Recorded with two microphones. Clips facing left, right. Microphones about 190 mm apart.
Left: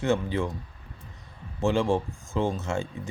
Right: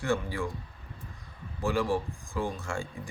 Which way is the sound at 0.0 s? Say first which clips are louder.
Left 4 dB; 20° left (ahead or behind).